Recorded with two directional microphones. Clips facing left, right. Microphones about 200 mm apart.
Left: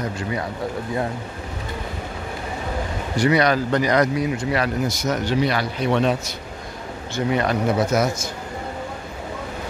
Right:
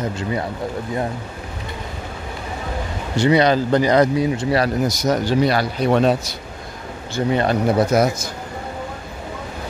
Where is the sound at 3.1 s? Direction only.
25° right (ahead or behind).